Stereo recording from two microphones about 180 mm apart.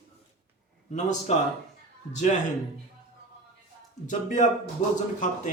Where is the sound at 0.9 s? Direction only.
40° left (ahead or behind).